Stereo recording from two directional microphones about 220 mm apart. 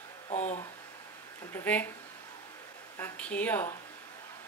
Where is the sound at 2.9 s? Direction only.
5° left (ahead or behind).